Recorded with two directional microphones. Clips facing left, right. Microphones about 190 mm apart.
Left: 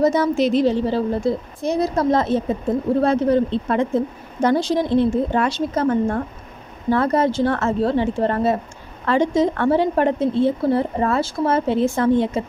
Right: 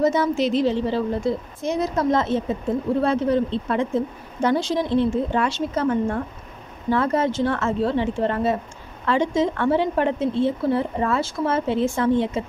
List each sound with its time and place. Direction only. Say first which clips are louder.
0.0 s a woman's voice: left 3 dB; 40° left (ahead or behind)